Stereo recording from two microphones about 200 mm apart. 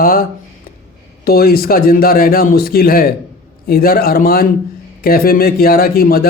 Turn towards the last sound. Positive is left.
turn(degrees=50)  # may be behind; listen again after turning